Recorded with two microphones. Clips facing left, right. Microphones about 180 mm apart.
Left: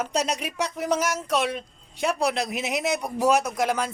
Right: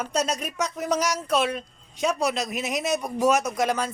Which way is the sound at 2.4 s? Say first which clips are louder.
Left 1 dB; 15° left (ahead or behind).